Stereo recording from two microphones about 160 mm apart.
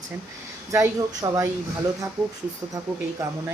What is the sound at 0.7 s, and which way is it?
Speech, 20° right (ahead or behind).